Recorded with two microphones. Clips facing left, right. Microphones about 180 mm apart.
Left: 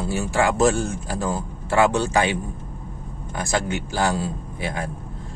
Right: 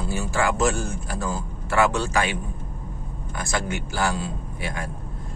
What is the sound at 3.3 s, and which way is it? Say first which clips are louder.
A man's voice: left 3 dB; 25° left (ahead or behind).